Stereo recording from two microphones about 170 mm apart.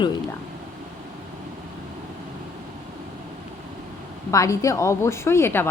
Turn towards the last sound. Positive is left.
turn(degrees=15)  # may be behind; listen again after turning